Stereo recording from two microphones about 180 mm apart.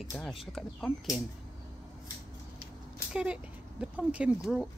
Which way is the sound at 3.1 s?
5° right (ahead or behind).